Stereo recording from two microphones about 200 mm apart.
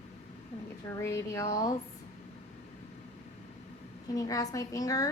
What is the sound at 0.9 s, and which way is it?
Speech, 10° left (ahead or behind).